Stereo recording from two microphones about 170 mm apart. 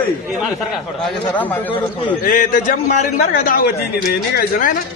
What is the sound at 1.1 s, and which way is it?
Speech, 10° left (ahead or behind).